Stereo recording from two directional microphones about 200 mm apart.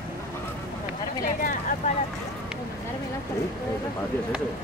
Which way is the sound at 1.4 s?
40° left (ahead or behind).